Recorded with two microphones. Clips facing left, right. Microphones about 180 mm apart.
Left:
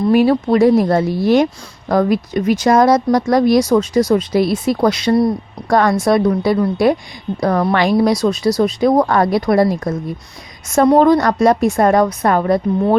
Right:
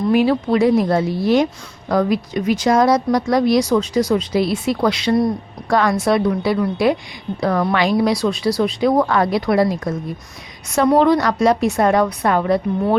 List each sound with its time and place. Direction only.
0.1 s speech: 45° left (ahead or behind)